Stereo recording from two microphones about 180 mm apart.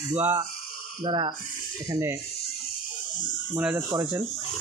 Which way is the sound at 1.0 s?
25° right (ahead or behind).